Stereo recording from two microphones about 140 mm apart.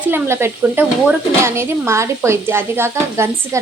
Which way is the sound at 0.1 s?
15° right (ahead or behind).